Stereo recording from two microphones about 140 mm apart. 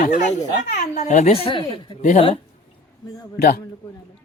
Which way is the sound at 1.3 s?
40° left (ahead or behind).